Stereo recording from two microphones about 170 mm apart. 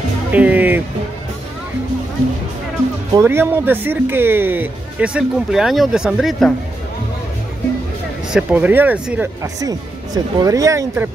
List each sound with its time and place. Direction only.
0.3 s speech: 10° right (ahead or behind)
3.2 s speech: 15° right (ahead or behind)
8.3 s speech: 5° right (ahead or behind)
9.4 s speech: 20° right (ahead or behind)